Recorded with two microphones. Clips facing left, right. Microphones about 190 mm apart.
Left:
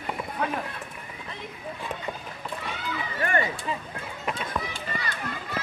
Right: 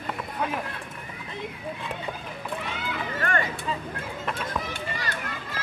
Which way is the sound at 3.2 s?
15° left (ahead or behind).